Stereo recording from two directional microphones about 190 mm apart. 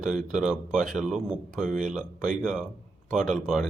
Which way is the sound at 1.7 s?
40° right (ahead or behind).